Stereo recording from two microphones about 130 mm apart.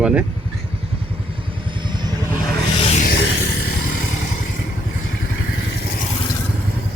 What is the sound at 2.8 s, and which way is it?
Music, 55° left (ahead or behind).